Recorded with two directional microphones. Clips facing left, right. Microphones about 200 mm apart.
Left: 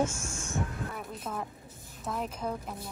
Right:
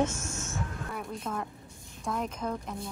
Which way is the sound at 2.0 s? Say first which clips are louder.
Right 1 dB; 5° left (ahead or behind).